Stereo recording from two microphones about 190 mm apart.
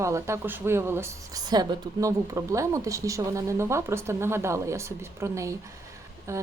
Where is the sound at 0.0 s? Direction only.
15° right (ahead or behind).